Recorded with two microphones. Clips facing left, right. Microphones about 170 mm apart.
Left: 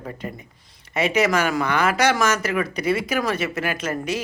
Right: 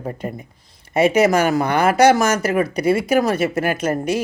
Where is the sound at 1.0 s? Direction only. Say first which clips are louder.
Right 5 dB; 45° right (ahead or behind).